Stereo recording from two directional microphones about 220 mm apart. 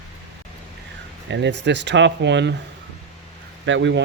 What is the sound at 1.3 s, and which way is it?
Speech, 55° right (ahead or behind).